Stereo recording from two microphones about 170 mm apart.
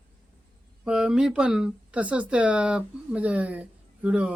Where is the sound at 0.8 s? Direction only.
5° right (ahead or behind).